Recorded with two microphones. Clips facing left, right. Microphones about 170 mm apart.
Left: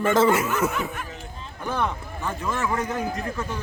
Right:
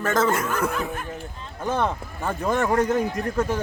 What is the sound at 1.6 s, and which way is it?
Speech, 25° right (ahead or behind).